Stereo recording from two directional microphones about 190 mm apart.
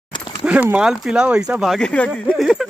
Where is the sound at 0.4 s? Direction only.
5° right (ahead or behind).